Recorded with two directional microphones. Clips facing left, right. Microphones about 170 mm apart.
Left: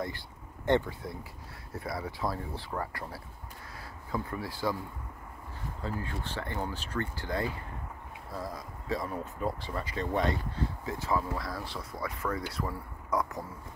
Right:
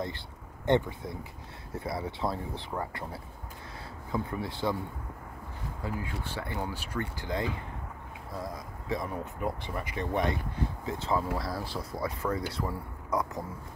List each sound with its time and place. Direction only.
0.7 s speech: 20° right (ahead or behind)
5.8 s speech: 15° right (ahead or behind)